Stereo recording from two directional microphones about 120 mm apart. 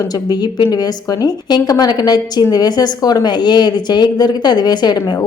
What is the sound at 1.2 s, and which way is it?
Speech, 35° left (ahead or behind).